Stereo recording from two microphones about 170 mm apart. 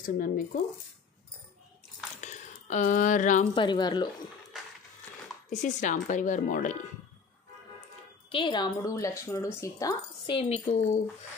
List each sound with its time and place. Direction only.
0.0 s speech: 50° left (ahead or behind)
2.2 s a sound: 45° left (ahead or behind)
3.5 s speech: 25° left (ahead or behind)
5.5 s speech: 45° left (ahead or behind)
8.3 s speech: 30° left (ahead or behind)
10.3 s speech: 40° left (ahead or behind)